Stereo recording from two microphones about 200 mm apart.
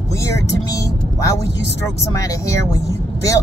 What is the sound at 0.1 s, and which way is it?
Speech, 15° left (ahead or behind).